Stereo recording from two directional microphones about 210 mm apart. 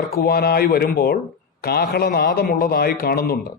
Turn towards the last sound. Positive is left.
turn(degrees=45)  # may be behind; listen again after turning